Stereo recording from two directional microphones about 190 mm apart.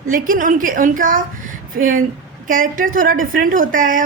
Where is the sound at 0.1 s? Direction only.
45° right (ahead or behind).